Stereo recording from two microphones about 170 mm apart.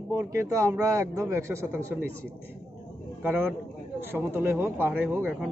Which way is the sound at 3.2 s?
10° right (ahead or behind).